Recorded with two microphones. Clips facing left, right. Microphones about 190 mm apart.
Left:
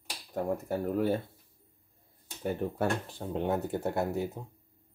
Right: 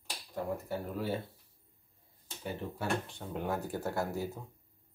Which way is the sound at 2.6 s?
50° left (ahead or behind).